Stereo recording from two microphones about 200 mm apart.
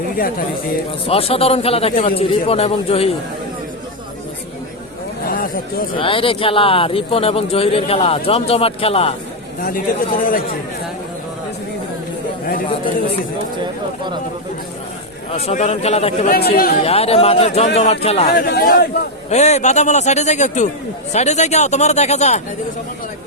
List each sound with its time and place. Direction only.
1.0 s a man's voice: 30° left (ahead or behind)
5.3 s a sound: 45° left (ahead or behind)
6.0 s a man's voice: 25° left (ahead or behind)
9.6 s speech: 45° left (ahead or behind)
15.3 s a man's voice: 35° left (ahead or behind)
18.3 s speech: 50° left (ahead or behind)
19.3 s a man's voice: 35° left (ahead or behind)